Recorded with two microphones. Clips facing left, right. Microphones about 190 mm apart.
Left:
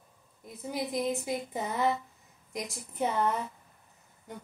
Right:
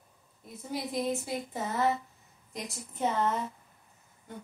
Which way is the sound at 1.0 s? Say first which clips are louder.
Left 1 dB; 15° left (ahead or behind).